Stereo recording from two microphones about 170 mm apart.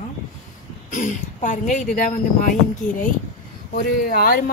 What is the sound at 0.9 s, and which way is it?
Speech, 50° left (ahead or behind).